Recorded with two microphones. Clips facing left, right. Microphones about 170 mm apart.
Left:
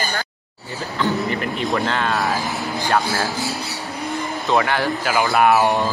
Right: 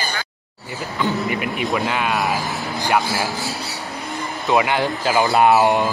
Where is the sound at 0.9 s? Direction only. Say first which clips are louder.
Even; 10° right (ahead or behind).